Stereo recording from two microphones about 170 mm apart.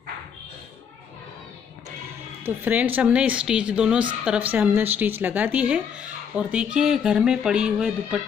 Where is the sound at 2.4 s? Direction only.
10° right (ahead or behind).